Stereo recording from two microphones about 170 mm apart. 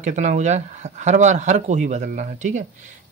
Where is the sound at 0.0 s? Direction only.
45° right (ahead or behind).